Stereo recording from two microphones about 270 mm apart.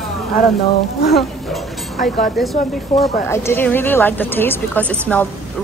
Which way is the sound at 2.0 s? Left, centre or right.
Left.